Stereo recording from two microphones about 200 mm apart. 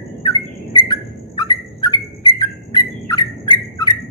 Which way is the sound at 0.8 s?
20° left (ahead or behind).